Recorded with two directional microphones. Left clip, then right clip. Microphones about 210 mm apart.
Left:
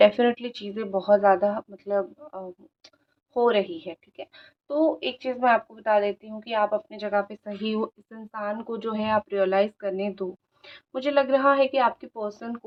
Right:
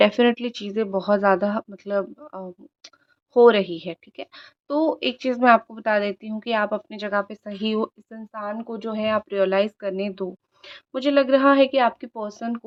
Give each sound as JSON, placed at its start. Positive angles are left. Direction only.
{"t": 0.0, "sound": "a woman's voice", "side_deg": -30}
{"t": 8.3, "sound": "speech", "side_deg": -20}